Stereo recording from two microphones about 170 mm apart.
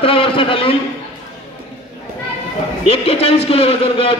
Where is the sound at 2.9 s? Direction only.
35° left (ahead or behind).